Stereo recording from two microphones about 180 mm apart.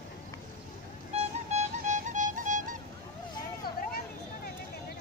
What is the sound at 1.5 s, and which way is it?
Music, 40° right (ahead or behind).